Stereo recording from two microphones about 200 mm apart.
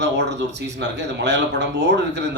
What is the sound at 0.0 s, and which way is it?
Speech, 60° right (ahead or behind).